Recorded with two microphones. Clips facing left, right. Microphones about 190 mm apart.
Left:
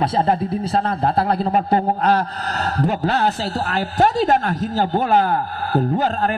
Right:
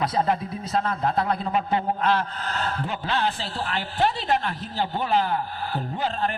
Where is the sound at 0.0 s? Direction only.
30° left (ahead or behind).